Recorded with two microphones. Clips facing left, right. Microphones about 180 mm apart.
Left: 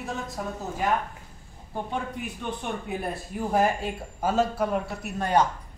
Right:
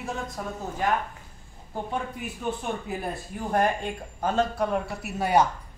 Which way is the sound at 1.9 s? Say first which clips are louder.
Even; centre (ahead or behind).